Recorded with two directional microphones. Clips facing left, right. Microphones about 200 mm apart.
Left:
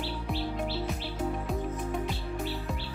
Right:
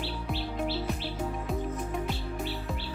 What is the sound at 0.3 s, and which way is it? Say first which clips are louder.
Music: right 1 dB; centre (ahead or behind).